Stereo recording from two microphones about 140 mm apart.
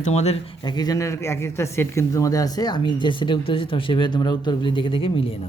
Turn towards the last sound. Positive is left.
turn(degrees=40)  # may be behind; listen again after turning